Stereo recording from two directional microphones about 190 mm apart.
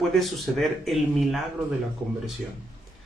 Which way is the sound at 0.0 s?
Centre (ahead or behind).